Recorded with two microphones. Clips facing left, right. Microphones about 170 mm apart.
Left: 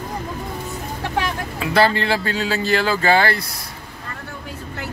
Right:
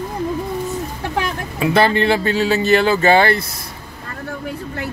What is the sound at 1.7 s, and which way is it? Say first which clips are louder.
Speech: right 3 dB; 20° right (ahead or behind).